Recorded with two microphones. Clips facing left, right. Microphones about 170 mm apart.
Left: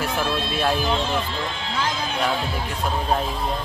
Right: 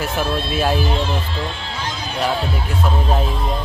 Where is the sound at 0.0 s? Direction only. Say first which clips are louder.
Right 3 dB; 5° right (ahead or behind).